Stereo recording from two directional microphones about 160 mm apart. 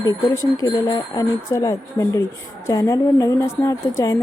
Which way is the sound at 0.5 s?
20° left (ahead or behind).